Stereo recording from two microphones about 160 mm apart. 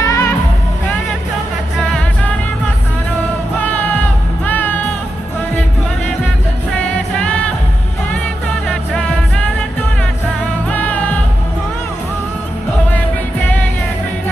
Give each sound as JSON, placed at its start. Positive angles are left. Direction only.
{"t": 0.0, "sound": "music", "side_deg": 20}
{"t": 3.6, "sound": "music", "side_deg": 10}
{"t": 10.7, "sound": "music", "side_deg": 10}